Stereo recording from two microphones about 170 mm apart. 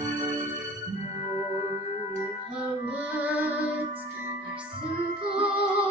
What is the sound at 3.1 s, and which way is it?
Music, 10° right (ahead or behind).